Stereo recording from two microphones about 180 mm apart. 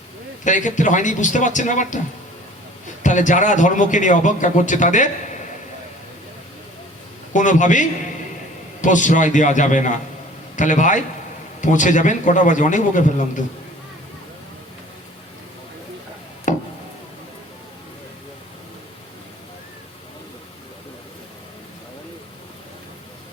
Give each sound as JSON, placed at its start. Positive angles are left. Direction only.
{"t": 0.4, "sound": "a man's voice", "side_deg": 45}
{"t": 3.0, "sound": "a man's voice", "side_deg": 45}
{"t": 7.3, "sound": "a man's voice", "side_deg": 45}
{"t": 16.5, "sound": "a sound", "side_deg": 45}